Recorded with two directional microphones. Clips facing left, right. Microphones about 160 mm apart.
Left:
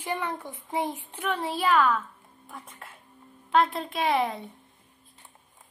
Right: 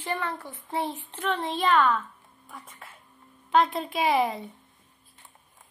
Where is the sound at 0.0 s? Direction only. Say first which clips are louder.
Even; 15° left (ahead or behind); by 4.5 s centre (ahead or behind).